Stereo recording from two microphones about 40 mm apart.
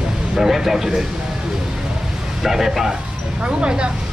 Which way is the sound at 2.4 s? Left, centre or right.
Centre.